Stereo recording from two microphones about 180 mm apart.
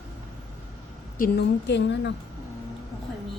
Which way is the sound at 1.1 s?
50° left (ahead or behind).